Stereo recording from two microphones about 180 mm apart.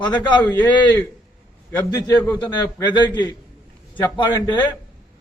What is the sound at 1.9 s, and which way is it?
A man's voice, 20° left (ahead or behind).